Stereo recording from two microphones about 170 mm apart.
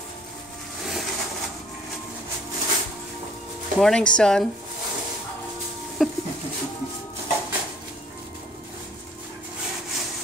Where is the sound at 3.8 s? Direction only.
5° left (ahead or behind).